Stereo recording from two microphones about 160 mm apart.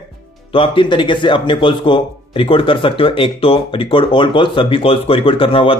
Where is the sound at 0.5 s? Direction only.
30° left (ahead or behind).